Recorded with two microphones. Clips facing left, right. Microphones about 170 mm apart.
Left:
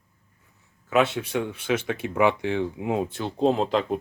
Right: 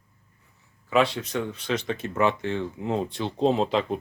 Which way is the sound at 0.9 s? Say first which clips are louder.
Left 1 dB; centre (ahead or behind).